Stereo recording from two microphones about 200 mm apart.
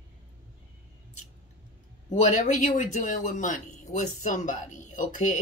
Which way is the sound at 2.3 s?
35° left (ahead or behind).